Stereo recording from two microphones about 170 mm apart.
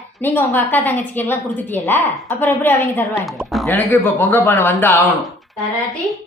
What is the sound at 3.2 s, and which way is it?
Speech, centre (ahead or behind).